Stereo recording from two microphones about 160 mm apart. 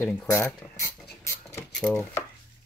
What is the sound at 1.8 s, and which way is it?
Speech, 5° left (ahead or behind).